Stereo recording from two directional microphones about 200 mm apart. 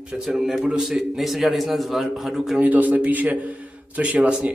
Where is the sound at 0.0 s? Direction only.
5° right (ahead or behind).